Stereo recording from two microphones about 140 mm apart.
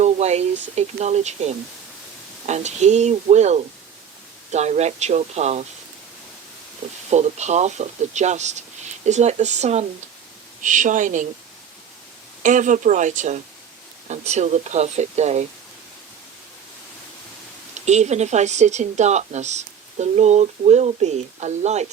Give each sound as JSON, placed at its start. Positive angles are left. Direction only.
{"t": 0.0, "sound": "speech", "side_deg": -50}
{"t": 7.1, "sound": "a woman's voice", "side_deg": -55}
{"t": 10.6, "sound": "a woman's voice", "side_deg": -65}
{"t": 12.4, "sound": "a woman's voice", "side_deg": -65}
{"t": 17.7, "sound": "a woman's voice", "side_deg": -55}